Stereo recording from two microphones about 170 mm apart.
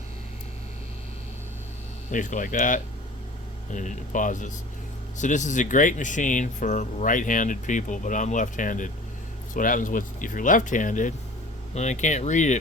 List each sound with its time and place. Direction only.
2.0 s speech: 45° left (ahead or behind)